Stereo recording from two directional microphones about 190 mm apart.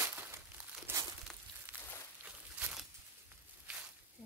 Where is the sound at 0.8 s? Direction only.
15° right (ahead or behind).